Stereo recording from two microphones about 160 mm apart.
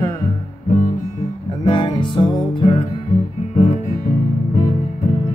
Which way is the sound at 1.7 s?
30° left (ahead or behind).